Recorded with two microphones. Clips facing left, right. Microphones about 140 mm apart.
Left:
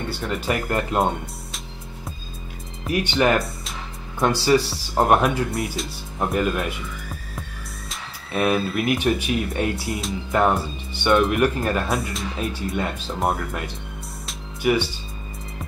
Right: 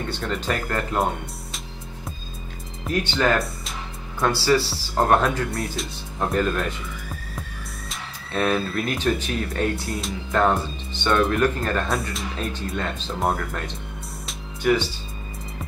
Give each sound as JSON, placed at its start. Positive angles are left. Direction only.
{"t": 0.1, "sound": "speech", "side_deg": 5}
{"t": 0.5, "sound": "speech", "side_deg": 20}
{"t": 2.9, "sound": "speech", "side_deg": 15}
{"t": 5.5, "sound": "speech", "side_deg": 0}
{"t": 8.3, "sound": "speech", "side_deg": 10}
{"t": 9.8, "sound": "speech", "side_deg": 0}
{"t": 10.3, "sound": "speech", "side_deg": 10}
{"t": 11.9, "sound": "speech", "side_deg": 0}
{"t": 14.2, "sound": "music", "side_deg": 10}